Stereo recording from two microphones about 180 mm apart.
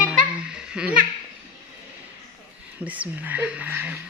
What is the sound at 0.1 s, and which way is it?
Giggle, 5° right (ahead or behind).